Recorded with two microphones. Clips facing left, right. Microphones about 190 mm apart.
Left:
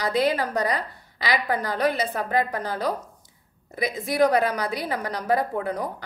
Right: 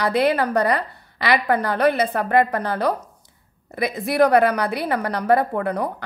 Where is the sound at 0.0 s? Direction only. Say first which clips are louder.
Right 4 dB; 65° right (ahead or behind).